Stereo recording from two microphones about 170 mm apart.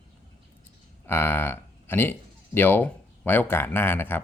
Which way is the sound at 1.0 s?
15° left (ahead or behind).